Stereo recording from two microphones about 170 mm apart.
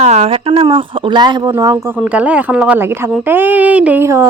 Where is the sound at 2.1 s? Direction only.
10° right (ahead or behind).